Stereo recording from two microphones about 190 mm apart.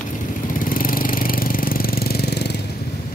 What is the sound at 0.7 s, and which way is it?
Engine, 50° left (ahead or behind).